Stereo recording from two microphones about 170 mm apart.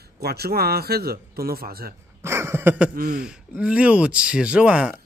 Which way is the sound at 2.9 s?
60° right (ahead or behind).